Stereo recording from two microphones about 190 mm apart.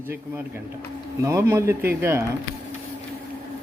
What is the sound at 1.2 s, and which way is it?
Speech, 15° right (ahead or behind).